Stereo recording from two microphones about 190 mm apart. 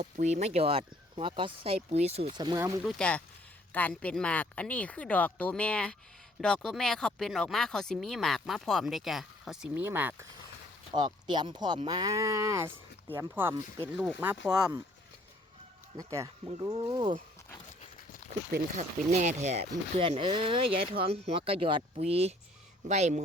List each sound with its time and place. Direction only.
0.0 s speech: 35° right (ahead or behind); by 2.7 s 20° right (ahead or behind)
2.8 s speech: 5° left (ahead or behind); by 10.2 s 10° right (ahead or behind)
10.9 s speech: 25° right (ahead or behind)
13.9 s speech: 5° left (ahead or behind)
16.0 s speech: 20° right (ahead or behind)
18.5 s speech: 45° right (ahead or behind)